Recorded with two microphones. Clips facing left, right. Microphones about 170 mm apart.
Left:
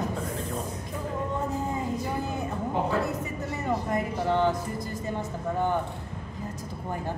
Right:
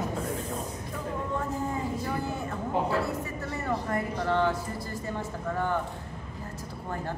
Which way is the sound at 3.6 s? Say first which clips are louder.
Left 2 dB; 15° left (ahead or behind).